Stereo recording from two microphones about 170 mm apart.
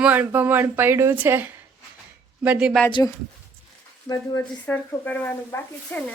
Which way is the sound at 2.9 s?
25° left (ahead or behind).